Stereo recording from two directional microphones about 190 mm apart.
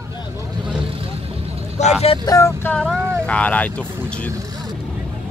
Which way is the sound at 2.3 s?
15° left (ahead or behind).